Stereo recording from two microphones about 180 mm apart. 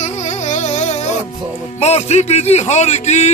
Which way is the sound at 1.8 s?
35° left (ahead or behind).